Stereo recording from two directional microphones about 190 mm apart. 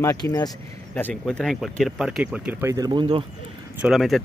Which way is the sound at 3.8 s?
Centre (ahead or behind).